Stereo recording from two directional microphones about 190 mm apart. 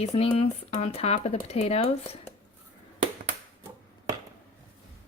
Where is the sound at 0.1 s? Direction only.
35° left (ahead or behind).